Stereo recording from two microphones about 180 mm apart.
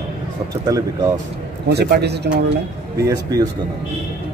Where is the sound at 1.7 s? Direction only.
65° right (ahead or behind).